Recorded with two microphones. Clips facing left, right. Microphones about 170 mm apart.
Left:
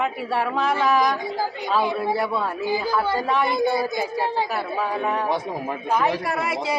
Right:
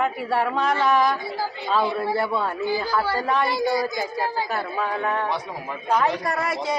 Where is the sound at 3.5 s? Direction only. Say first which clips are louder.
Left 1 dB; 25° left (ahead or behind).